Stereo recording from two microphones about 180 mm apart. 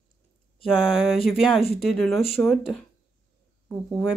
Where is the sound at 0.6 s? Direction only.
5° right (ahead or behind).